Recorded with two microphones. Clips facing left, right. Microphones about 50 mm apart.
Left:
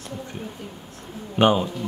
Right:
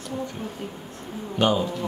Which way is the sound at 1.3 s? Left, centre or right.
Left.